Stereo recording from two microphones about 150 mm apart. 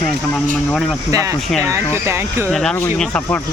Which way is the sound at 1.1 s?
20° right (ahead or behind).